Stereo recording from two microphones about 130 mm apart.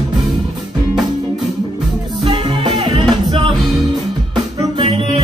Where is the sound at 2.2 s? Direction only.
40° right (ahead or behind).